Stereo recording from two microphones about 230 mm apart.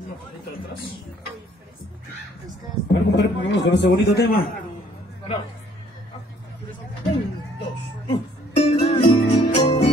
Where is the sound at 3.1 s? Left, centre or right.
Left.